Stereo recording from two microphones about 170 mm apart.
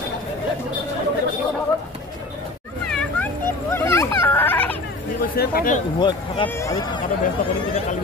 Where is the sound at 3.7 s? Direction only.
15° left (ahead or behind).